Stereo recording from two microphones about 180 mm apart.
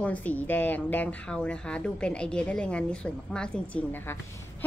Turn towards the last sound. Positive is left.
turn(degrees=10)  # may be behind; listen again after turning